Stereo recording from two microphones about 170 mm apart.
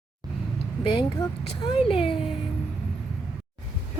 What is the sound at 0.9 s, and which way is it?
A child's voice, 30° left (ahead or behind).